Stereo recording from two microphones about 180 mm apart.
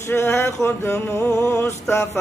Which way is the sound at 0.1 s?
15° left (ahead or behind).